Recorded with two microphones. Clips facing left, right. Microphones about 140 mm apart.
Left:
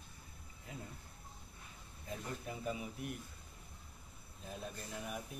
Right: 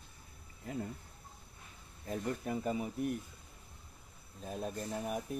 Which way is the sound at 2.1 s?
45° right (ahead or behind).